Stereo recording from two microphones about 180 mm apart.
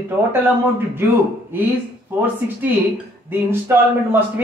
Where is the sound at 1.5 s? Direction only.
10° right (ahead or behind).